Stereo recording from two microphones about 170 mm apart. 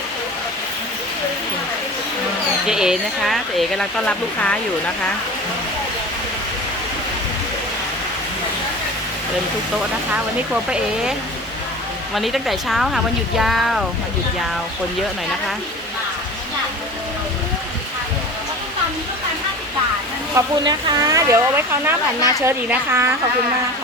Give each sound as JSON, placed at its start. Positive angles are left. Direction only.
{"t": 2.6, "sound": "speech", "side_deg": -5}
{"t": 10.5, "sound": "speech", "side_deg": -5}
{"t": 12.1, "sound": "speech", "side_deg": 0}
{"t": 20.3, "sound": "speech", "side_deg": -25}